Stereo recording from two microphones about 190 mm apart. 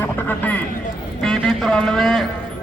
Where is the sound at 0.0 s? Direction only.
10° left (ahead or behind).